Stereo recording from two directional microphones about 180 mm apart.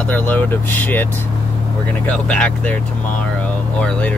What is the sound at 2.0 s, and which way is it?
Speech, 5° left (ahead or behind).